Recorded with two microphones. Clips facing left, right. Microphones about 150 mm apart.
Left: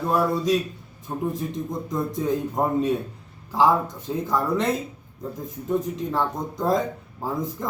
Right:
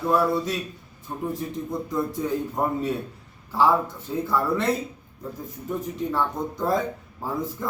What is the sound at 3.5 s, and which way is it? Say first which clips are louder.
A man's voice: left 1 dB; 15° left (ahead or behind).